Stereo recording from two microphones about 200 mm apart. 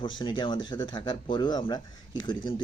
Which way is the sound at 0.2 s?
25° left (ahead or behind).